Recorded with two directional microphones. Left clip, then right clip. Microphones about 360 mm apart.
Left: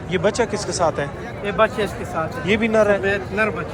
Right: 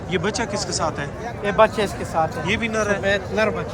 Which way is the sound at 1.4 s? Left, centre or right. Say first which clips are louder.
Right 2 dB; right.